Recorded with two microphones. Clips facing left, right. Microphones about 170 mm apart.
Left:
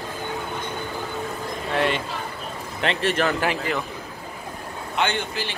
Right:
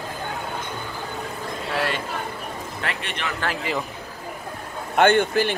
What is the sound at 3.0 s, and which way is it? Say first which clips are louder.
Speech: left 9 dB; 40° left (ahead or behind).